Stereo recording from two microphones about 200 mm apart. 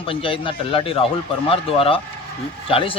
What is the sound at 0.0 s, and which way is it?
Speech, 25° left (ahead or behind).